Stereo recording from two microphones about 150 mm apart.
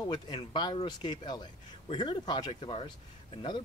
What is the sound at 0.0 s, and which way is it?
Speech, 30° left (ahead or behind).